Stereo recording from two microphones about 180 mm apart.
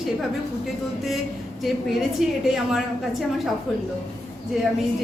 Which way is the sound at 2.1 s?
Centre (ahead or behind).